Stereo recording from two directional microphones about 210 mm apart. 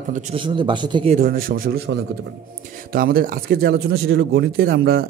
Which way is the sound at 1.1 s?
45° right (ahead or behind).